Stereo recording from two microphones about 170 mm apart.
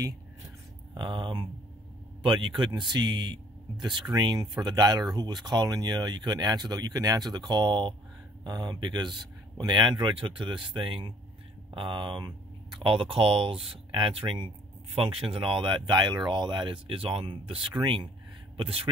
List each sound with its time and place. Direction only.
0.9 s speech: 25° right (ahead or behind)